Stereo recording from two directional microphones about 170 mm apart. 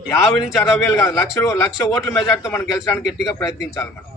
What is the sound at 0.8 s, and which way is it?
A man's voice, 15° left (ahead or behind).